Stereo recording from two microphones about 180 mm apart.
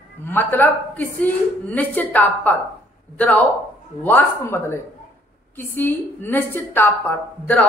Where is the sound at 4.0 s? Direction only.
10° left (ahead or behind).